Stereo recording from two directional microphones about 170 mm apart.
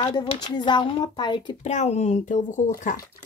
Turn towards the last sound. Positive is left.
turn(degrees=50)  # may be behind; listen again after turning